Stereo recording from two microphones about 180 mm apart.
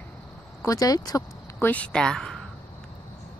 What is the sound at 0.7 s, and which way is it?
Speech, 20° left (ahead or behind).